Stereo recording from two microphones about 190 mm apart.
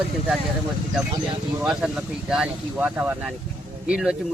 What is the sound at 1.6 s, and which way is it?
A man's voice, 5° right (ahead or behind).